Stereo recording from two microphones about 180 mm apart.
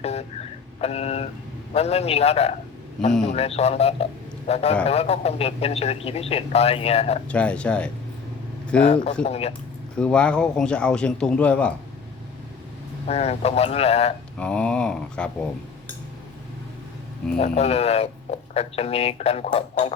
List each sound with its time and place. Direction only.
0.0 s a sound: 35° left (ahead or behind)
0.8 s speech: 35° left (ahead or behind)
7.3 s a man's voice: 5° left (ahead or behind)
9.2 s speech: 35° left (ahead or behind)
9.9 s a man's voice: 5° left (ahead or behind)
13.1 s speech: 35° left (ahead or behind)
14.3 s a man's voice: 5° left (ahead or behind)
17.4 s speech: 35° left (ahead or behind)